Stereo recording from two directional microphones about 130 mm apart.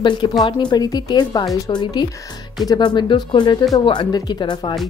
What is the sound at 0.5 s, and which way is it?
A woman's voice, 35° left (ahead or behind).